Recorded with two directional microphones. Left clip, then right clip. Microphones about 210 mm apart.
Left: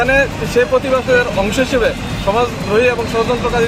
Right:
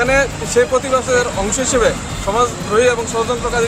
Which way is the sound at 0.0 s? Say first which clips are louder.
Left 1 dB; 15° right (ahead or behind).